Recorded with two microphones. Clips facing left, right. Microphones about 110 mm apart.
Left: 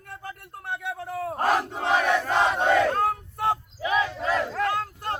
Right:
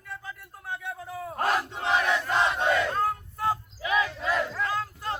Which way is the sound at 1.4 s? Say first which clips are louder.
Left 3 dB; 40° left (ahead or behind).